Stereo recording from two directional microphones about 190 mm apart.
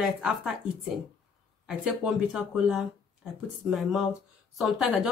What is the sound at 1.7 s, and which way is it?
Speech, 5° right (ahead or behind).